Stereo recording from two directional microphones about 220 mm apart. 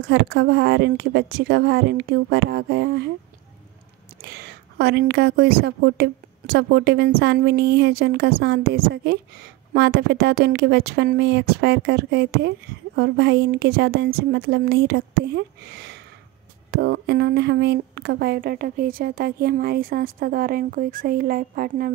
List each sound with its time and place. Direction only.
0.1 s speech: 45° right (ahead or behind)
4.2 s a woman's voice: 50° right (ahead or behind)